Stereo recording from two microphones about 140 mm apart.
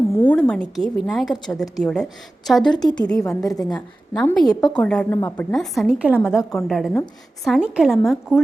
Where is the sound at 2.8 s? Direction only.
30° left (ahead or behind).